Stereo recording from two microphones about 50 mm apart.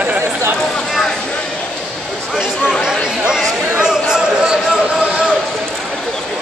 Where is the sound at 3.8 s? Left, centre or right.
Centre.